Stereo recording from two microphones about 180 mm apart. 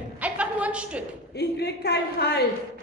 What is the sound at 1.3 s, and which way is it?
A woman's voice, 65° left (ahead or behind).